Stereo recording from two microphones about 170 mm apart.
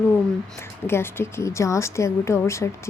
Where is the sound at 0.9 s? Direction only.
15° left (ahead or behind).